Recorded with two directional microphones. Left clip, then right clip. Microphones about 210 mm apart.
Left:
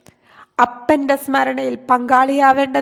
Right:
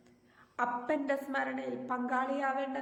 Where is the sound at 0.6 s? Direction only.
50° left (ahead or behind).